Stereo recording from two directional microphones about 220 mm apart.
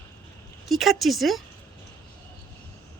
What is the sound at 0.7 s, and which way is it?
Speech, centre (ahead or behind).